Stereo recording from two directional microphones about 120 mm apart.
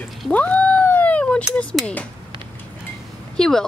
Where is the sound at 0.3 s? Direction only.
10° left (ahead or behind).